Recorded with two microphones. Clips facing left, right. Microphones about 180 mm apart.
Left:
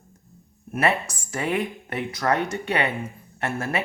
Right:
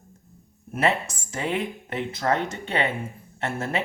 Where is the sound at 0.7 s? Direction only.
25° right (ahead or behind).